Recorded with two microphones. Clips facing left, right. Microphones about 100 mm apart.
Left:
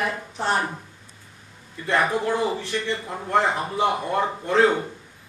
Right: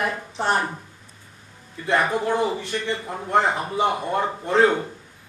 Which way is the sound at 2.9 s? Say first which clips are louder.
Right 1 dB; 15° right (ahead or behind).